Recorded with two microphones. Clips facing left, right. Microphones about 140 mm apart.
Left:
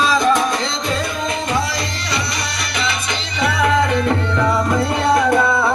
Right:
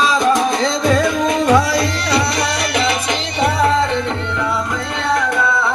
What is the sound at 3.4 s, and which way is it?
Music, 30° right (ahead or behind).